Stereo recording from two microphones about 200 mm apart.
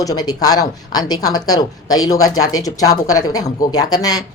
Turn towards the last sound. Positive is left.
turn(degrees=20)  # may be behind; listen again after turning